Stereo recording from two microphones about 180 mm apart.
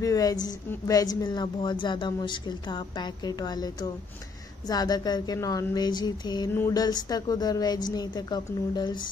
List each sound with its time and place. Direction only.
0.0 s a woman's voice: 20° left (ahead or behind)